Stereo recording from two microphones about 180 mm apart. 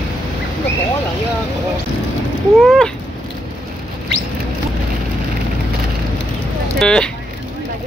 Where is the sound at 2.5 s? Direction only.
Centre (ahead or behind).